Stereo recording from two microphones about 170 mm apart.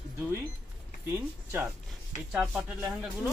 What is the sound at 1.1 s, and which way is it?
Speech, 10° right (ahead or behind).